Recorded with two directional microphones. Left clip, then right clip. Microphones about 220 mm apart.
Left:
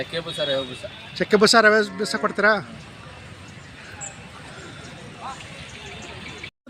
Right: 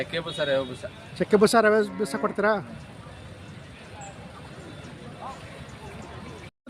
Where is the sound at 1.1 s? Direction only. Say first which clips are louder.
Left 3 dB; centre (ahead or behind).